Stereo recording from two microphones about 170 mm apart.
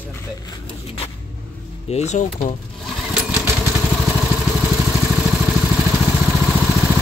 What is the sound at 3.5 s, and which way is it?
Vehicle, centre (ahead or behind).